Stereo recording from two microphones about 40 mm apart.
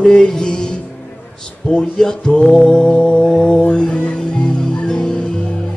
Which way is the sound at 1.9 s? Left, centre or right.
Centre.